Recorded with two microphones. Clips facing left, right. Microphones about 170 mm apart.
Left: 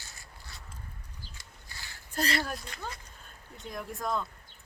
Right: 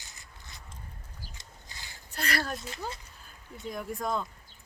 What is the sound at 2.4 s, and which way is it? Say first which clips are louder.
Speech: right 2 dB; centre (ahead or behind).